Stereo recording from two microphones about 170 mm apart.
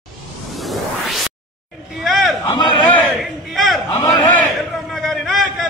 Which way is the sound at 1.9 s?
Centre (ahead or behind).